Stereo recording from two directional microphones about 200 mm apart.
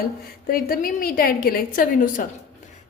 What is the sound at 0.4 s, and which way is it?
A woman's voice, 45° left (ahead or behind).